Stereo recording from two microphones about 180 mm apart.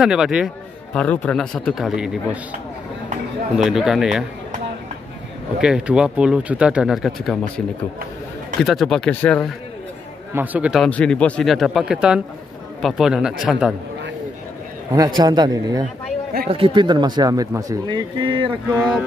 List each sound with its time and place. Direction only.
0.0 s speech: 5° right (ahead or behind)
0.9 s speech: 10° left (ahead or behind)
3.5 s speech: 5° right (ahead or behind)
5.6 s speech: 5° right (ahead or behind)
10.3 s speech: 10° right (ahead or behind)
15.1 s speech: 25° right (ahead or behind)
18.8 s speech: centre (ahead or behind)